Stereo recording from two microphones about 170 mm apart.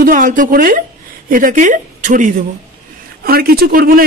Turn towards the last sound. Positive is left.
turn(degrees=-55)  # may be behind; listen again after turning